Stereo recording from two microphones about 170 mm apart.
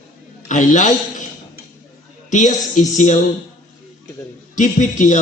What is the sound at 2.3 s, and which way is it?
Speech, 45° left (ahead or behind).